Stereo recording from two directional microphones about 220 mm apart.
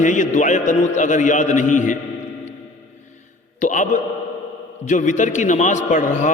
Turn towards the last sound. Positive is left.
turn(degrees=35)  # may be behind; listen again after turning